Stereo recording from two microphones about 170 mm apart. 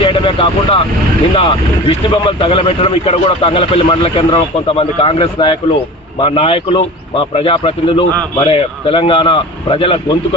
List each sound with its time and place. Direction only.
0.0 s speech: 30° left (ahead or behind)